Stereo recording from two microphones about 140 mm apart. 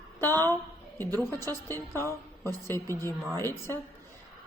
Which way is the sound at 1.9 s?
20° left (ahead or behind).